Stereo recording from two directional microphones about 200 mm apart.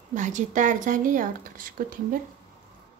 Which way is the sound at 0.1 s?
40° right (ahead or behind).